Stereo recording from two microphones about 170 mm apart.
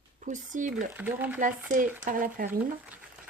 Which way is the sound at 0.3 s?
50° right (ahead or behind).